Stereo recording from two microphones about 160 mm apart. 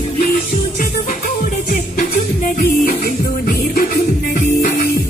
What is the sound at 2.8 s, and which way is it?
Music, 60° left (ahead or behind).